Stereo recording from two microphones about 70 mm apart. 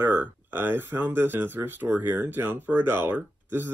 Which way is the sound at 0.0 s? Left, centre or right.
Right.